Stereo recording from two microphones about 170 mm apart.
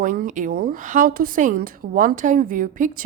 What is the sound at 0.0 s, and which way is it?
A woman's voice, 50° right (ahead or behind).